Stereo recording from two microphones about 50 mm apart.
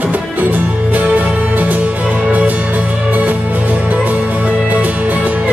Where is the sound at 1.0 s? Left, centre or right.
Right.